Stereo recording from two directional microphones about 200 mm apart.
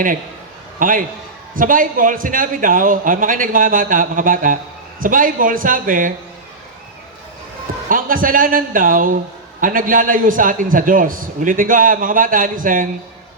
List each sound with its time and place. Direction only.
0.8 s a man's voice: 45° right (ahead or behind)
7.9 s a man's voice: 45° right (ahead or behind)